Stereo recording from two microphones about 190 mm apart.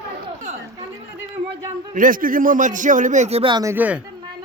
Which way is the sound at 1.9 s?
45° right (ahead or behind).